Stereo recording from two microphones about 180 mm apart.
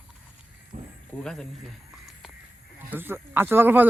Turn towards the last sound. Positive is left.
turn(degrees=-10)  # may be behind; listen again after turning